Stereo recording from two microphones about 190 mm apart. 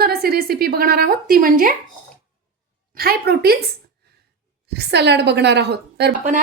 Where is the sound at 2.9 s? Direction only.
55° right (ahead or behind).